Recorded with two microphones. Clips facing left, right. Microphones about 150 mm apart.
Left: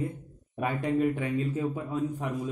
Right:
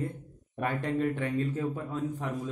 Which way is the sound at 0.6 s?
10° left (ahead or behind).